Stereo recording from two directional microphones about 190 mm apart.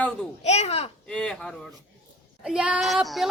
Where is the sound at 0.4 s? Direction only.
35° left (ahead or behind).